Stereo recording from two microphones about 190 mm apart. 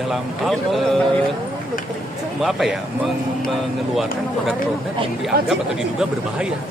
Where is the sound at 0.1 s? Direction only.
Centre (ahead or behind).